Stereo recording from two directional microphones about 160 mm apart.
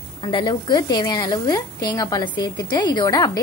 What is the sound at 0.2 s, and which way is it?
A woman's voice, 30° left (ahead or behind).